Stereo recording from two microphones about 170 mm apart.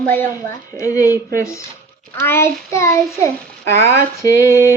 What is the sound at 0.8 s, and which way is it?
Speech, 20° left (ahead or behind).